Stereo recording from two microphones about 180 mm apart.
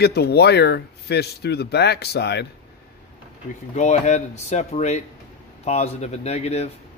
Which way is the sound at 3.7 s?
40° left (ahead or behind).